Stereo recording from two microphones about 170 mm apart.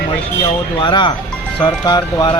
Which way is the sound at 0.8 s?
30° left (ahead or behind).